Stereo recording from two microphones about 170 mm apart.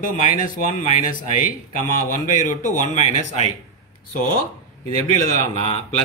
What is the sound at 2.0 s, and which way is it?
Speech, 50° left (ahead or behind).